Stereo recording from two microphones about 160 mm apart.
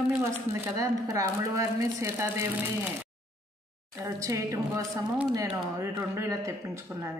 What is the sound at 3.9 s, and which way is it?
Speech, 20° right (ahead or behind).